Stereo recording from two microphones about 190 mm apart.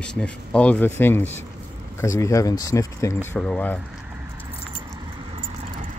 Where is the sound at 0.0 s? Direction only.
5° left (ahead or behind).